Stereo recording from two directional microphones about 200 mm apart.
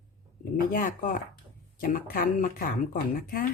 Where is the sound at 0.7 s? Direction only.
45° left (ahead or behind).